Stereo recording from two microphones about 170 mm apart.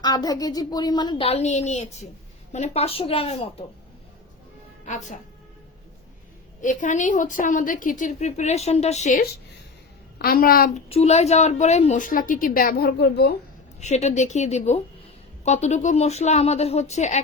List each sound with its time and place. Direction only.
0.0 s a woman's voice: 20° left (ahead or behind)
1.3 s speech: 40° left (ahead or behind)
4.9 s a woman's voice: 45° left (ahead or behind)
6.6 s a woman's voice: 50° left (ahead or behind)
10.2 s a woman's voice: 65° left (ahead or behind)
10.8 s a woman's voice: 35° left (ahead or behind); by 13.3 s 70° left (ahead or behind)
13.7 s speech: 40° left (ahead or behind)